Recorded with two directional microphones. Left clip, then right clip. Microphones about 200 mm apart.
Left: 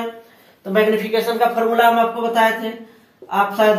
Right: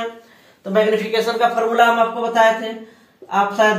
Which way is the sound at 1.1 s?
25° right (ahead or behind).